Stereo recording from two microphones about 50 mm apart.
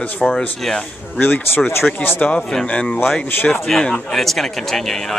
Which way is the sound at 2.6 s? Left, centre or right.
Left.